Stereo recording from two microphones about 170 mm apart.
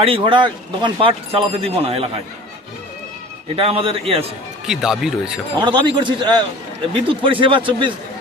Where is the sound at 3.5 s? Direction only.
35° right (ahead or behind).